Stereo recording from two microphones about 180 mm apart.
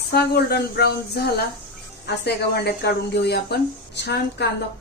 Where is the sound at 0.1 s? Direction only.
65° left (ahead or behind).